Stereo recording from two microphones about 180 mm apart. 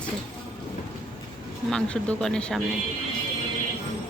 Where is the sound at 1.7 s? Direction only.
5° left (ahead or behind).